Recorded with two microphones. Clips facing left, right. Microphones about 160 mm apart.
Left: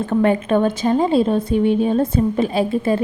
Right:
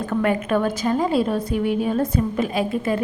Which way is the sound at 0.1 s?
30° left (ahead or behind).